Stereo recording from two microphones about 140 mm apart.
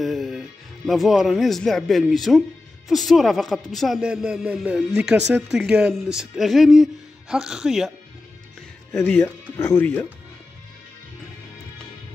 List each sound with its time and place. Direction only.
0.0 s a man's voice: centre (ahead or behind)
8.9 s speech: 15° left (ahead or behind)